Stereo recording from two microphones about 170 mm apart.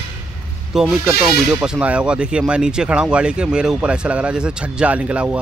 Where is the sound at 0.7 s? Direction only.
Centre (ahead or behind).